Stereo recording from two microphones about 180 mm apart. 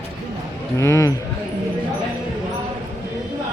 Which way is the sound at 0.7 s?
15° left (ahead or behind).